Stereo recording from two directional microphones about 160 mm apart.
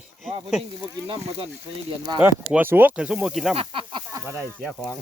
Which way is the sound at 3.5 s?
35° right (ahead or behind).